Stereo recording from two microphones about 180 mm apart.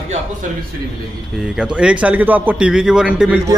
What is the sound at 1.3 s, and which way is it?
A man's voice, 5° right (ahead or behind).